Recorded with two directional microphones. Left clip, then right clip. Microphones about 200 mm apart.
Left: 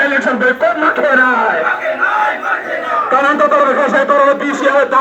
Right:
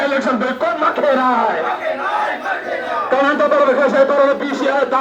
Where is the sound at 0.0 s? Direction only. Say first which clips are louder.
Left 5 dB; 5° left (ahead or behind).